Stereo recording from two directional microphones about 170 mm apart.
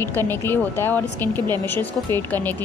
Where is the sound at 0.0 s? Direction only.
15° left (ahead or behind).